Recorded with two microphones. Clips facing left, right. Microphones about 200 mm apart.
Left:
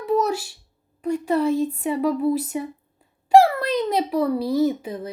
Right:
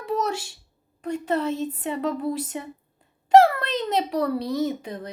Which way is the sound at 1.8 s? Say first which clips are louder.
Left 5 dB; 10° left (ahead or behind).